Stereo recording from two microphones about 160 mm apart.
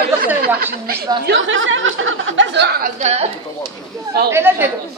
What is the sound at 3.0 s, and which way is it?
Speech, 40° right (ahead or behind).